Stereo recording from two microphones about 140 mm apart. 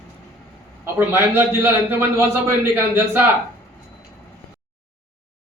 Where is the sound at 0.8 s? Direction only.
15° right (ahead or behind).